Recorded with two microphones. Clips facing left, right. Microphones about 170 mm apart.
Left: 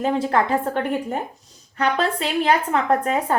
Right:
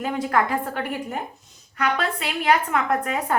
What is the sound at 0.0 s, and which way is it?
A woman's voice, 30° left (ahead or behind).